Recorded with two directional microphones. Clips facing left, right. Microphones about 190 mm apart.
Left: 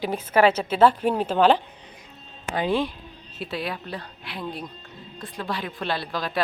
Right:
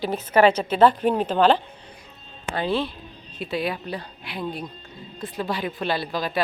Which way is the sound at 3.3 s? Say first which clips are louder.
Right 4 dB; centre (ahead or behind).